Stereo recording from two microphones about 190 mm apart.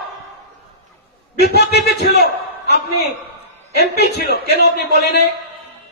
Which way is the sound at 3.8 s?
60° left (ahead or behind).